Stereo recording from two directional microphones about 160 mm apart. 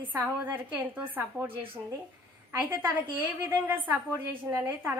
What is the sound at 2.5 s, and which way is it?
A woman's voice, 10° right (ahead or behind).